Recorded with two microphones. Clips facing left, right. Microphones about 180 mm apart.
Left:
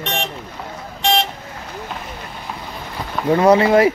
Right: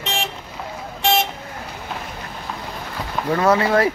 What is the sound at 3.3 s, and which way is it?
Speech, 20° left (ahead or behind).